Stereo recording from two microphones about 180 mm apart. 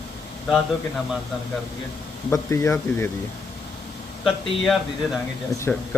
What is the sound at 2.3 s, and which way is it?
Speech, 15° left (ahead or behind).